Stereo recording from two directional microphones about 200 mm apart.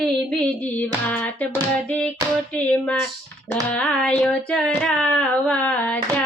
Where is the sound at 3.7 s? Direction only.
5° left (ahead or behind).